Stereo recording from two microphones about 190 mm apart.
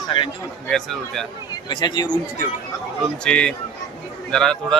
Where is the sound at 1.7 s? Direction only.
20° left (ahead or behind).